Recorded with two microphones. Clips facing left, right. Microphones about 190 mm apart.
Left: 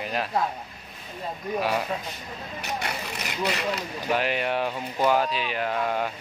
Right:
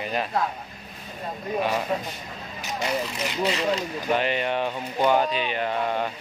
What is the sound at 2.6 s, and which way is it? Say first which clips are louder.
Vehicle: right 2 dB; 60° left (ahead or behind).